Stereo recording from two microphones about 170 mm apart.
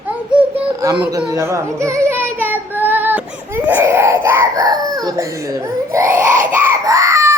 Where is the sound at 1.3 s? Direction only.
15° right (ahead or behind).